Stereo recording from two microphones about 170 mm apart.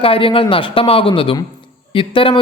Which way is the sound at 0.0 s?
30° left (ahead or behind).